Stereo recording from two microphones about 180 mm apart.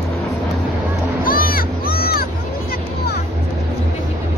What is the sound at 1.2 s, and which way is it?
Music, 55° left (ahead or behind).